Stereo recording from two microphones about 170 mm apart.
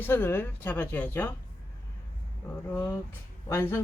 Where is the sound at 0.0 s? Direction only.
10° left (ahead or behind).